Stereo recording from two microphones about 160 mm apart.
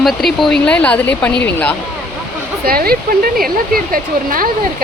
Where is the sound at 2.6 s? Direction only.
70° right (ahead or behind).